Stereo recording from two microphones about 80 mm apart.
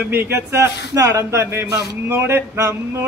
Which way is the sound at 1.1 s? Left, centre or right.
Right.